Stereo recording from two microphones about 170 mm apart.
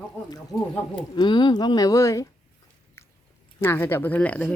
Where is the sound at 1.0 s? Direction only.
25° left (ahead or behind).